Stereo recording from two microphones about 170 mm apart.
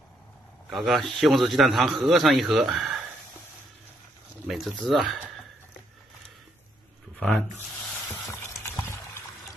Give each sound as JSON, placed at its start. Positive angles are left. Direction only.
{"t": 0.7, "sound": "a man's voice", "side_deg": 0}
{"t": 4.5, "sound": "a man's voice", "side_deg": 0}
{"t": 7.2, "sound": "speech", "side_deg": 10}
{"t": 8.1, "sound": "a sound", "side_deg": 15}